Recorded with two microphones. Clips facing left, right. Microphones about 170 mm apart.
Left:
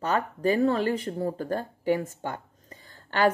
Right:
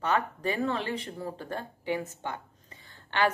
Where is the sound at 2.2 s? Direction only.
40° left (ahead or behind).